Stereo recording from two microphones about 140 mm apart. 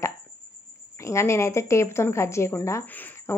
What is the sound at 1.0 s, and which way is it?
A woman's voice, 20° left (ahead or behind).